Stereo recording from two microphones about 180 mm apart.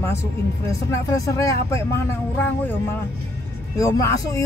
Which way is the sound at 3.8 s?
15° left (ahead or behind).